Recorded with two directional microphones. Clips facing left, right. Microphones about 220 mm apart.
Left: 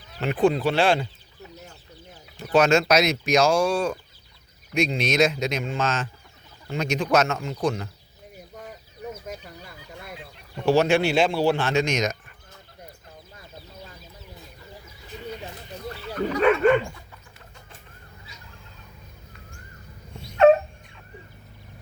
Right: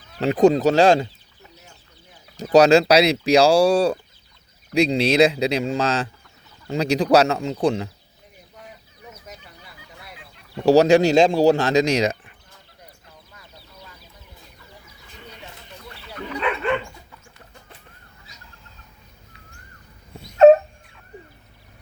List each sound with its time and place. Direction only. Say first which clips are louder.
0.2 s speech: right 5 dB; 40° right (ahead or behind)
2.4 s speech: right 6 dB; 35° right (ahead or behind)
9.2 s chicken: left 6 dB; 50° left (ahead or behind)
10.7 s speech: right 6 dB; 40° right (ahead or behind)
16.1 s bow-wow: left 6 dB; 45° left (ahead or behind)